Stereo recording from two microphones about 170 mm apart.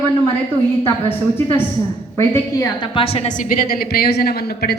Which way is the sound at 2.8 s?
30° left (ahead or behind).